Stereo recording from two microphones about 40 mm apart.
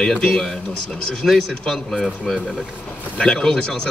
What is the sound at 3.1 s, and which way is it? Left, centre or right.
Speech, left.